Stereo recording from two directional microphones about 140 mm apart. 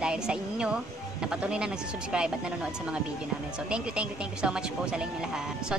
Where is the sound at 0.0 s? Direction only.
5° right (ahead or behind).